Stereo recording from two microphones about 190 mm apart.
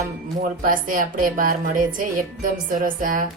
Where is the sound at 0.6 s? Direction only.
45° right (ahead or behind).